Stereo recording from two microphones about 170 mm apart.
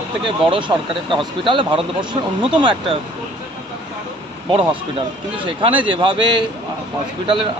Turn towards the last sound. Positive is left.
turn(degrees=-30)  # may be behind; listen again after turning